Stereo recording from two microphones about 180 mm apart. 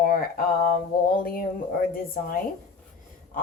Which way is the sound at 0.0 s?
55° left (ahead or behind).